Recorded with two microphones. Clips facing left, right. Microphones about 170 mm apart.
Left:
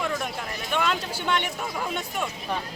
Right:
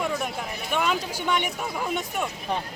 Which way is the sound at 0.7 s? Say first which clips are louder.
Right 1 dB; 10° right (ahead or behind).